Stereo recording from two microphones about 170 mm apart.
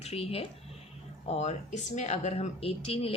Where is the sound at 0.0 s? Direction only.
35° left (ahead or behind).